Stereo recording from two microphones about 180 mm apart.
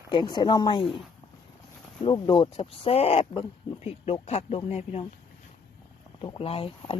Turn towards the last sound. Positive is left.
turn(degrees=30)  # may be behind; listen again after turning